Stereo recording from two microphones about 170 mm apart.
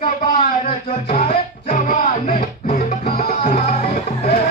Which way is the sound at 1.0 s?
55° left (ahead or behind).